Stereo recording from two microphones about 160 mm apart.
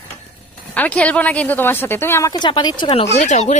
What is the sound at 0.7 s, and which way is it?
Speech, 10° left (ahead or behind).